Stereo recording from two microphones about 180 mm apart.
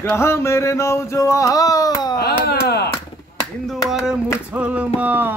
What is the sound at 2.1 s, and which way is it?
Speech, 60° left (ahead or behind).